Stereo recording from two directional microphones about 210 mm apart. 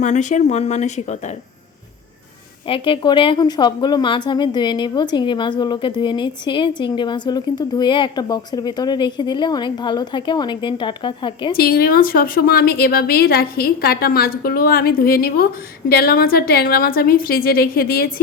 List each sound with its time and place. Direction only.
0.0 s speech: 35° left (ahead or behind)
2.6 s a woman's voice: 25° left (ahead or behind)
11.5 s a woman's voice: 45° left (ahead or behind)